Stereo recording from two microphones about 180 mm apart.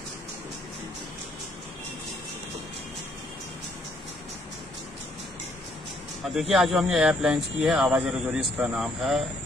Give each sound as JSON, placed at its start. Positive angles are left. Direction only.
{"t": 6.2, "sound": "speech", "side_deg": 0}